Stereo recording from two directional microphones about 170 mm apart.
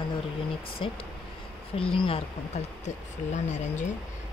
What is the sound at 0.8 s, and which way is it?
Speech, 35° left (ahead or behind).